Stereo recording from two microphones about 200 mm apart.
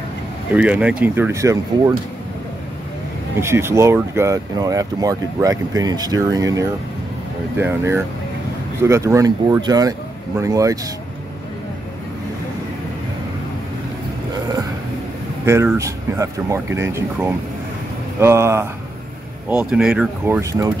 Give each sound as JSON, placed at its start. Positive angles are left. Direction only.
{"t": 0.5, "sound": "speech", "side_deg": -5}
{"t": 3.3, "sound": "speech", "side_deg": -15}
{"t": 15.4, "sound": "speech", "side_deg": -15}